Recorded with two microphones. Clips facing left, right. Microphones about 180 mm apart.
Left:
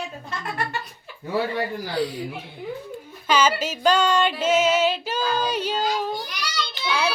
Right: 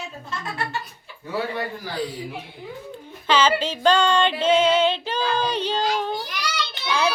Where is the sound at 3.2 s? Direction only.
10° left (ahead or behind).